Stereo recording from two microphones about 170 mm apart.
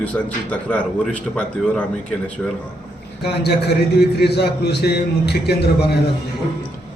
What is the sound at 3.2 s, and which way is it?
A man's voice, 75° left (ahead or behind).